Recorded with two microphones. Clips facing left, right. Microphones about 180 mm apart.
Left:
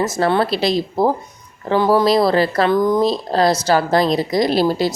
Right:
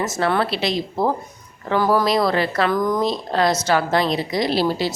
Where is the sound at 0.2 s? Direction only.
35° left (ahead or behind).